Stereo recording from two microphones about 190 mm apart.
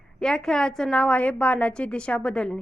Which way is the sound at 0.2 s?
5° left (ahead or behind).